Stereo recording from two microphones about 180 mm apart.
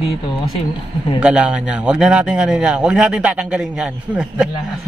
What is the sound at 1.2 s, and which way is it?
Speech, 5° right (ahead or behind).